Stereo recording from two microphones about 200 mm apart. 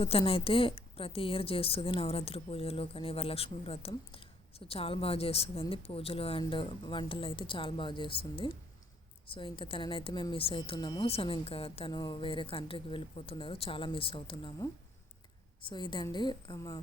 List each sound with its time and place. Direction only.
0.0 s a woman's voice: 30° left (ahead or behind)